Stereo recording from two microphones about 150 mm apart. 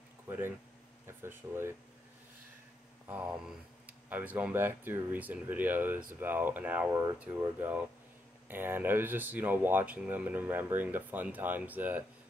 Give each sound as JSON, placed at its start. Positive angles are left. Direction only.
{"t": 1.0, "sound": "speech", "side_deg": -15}
{"t": 3.1, "sound": "speech", "side_deg": -10}